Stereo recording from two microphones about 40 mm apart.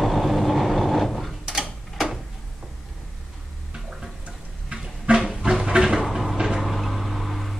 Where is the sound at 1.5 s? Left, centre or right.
Centre.